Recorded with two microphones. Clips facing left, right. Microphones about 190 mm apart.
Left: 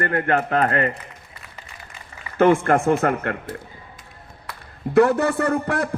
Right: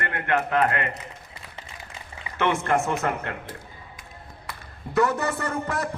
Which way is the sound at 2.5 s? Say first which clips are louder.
Left 6 dB; 50° left (ahead or behind).